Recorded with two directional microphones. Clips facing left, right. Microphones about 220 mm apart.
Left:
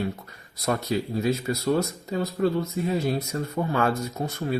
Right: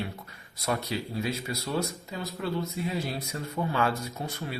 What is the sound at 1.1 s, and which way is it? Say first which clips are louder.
Speech: left 7 dB; 40° left (ahead or behind).